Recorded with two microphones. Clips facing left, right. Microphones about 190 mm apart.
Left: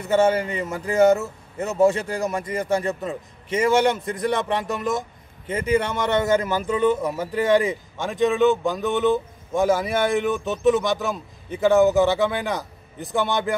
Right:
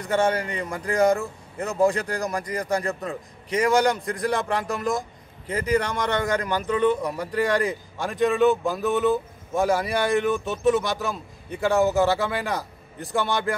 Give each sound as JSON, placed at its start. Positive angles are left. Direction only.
{"t": 0.0, "sound": "a man's voice", "side_deg": 5}
{"t": 6.1, "sound": "a man's voice", "side_deg": 25}
{"t": 6.7, "sound": "a man's voice", "side_deg": 5}